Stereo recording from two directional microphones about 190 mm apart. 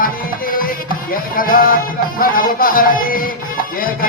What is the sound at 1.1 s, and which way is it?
Speech, 50° left (ahead or behind).